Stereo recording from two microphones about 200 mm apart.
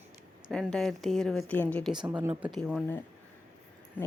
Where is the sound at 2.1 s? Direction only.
10° right (ahead or behind).